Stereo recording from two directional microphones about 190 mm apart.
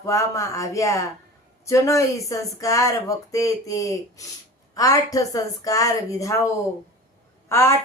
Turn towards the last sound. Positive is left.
turn(degrees=15)  # may be behind; listen again after turning